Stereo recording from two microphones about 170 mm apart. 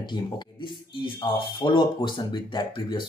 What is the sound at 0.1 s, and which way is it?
Speech, 30° left (ahead or behind).